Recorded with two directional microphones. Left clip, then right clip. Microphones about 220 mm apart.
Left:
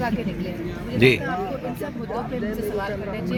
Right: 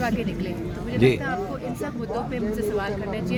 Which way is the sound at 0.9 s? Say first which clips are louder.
Left 3 dB; 10° left (ahead or behind).